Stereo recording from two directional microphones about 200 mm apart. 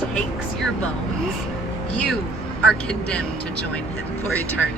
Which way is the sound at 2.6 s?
5° left (ahead or behind).